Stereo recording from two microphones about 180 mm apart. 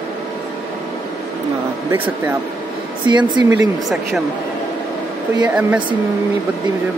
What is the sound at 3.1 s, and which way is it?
Speech, 25° right (ahead or behind).